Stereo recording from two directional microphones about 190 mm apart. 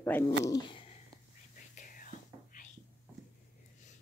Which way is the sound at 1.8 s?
45° left (ahead or behind).